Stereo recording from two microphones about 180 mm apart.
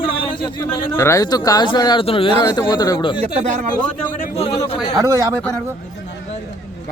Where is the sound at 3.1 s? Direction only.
35° right (ahead or behind).